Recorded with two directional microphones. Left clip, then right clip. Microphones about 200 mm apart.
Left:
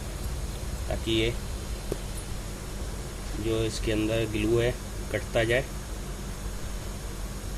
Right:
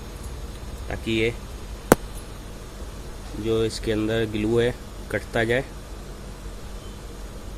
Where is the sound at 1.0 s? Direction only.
45° right (ahead or behind).